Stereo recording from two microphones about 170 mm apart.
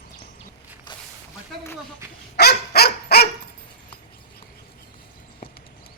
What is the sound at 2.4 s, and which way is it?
Dog, 70° left (ahead or behind).